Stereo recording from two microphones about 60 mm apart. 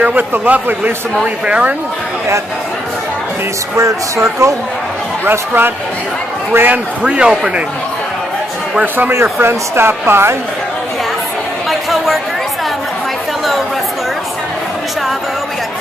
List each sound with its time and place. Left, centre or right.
0.0 s a man's voice: right
3.7 s speech: right
5.2 s speech: right
7.0 s speech: centre
9.1 s speech: right